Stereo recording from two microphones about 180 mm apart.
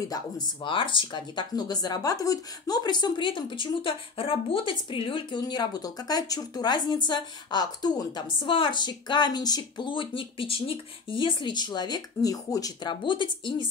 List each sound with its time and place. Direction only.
0.1 s speech: 25° left (ahead or behind)